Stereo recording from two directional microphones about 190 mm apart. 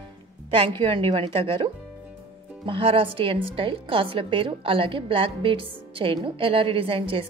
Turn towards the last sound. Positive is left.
turn(degrees=-30)  # may be behind; listen again after turning